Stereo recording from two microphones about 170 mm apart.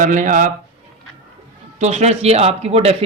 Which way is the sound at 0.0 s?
50° right (ahead or behind).